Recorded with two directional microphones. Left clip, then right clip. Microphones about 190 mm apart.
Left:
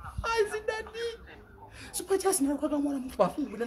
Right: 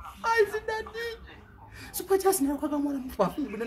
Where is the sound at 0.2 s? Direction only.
20° left (ahead or behind).